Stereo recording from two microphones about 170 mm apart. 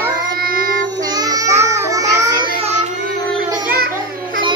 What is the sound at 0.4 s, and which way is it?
Child singing, 60° right (ahead or behind).